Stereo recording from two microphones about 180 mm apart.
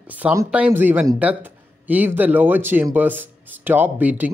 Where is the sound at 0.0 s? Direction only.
10° right (ahead or behind).